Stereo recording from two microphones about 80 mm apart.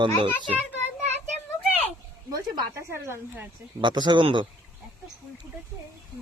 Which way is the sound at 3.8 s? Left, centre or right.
Right.